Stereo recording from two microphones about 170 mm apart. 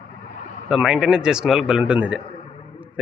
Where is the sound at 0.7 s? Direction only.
5° right (ahead or behind).